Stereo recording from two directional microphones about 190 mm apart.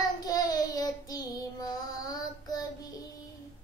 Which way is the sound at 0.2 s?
20° left (ahead or behind).